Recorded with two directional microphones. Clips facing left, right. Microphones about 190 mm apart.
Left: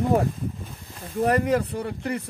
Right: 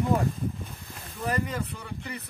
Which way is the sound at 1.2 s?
65° left (ahead or behind).